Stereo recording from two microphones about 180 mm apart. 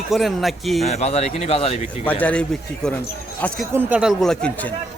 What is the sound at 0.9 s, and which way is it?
Speech, 40° left (ahead or behind).